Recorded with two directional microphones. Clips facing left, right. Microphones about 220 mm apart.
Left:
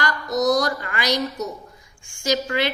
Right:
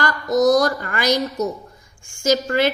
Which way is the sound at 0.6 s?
45° right (ahead or behind).